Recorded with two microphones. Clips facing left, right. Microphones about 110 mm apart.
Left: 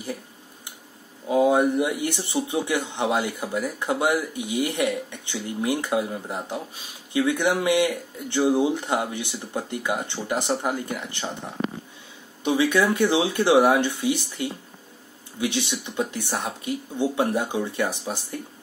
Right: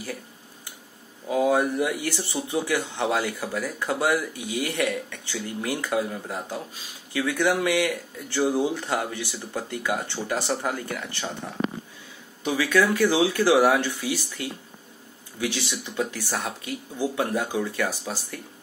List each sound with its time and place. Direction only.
1.3 s speech: 20° left (ahead or behind)
12.4 s speech: 20° left (ahead or behind)